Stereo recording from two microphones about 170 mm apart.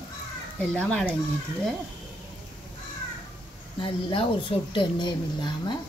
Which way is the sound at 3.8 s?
30° left (ahead or behind).